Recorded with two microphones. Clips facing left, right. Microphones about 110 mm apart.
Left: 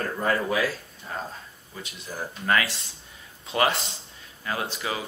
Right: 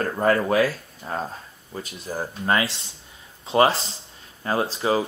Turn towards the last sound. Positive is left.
turn(degrees=-35)  # may be behind; listen again after turning